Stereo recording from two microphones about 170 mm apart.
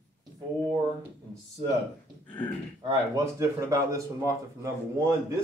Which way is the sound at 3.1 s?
20° right (ahead or behind).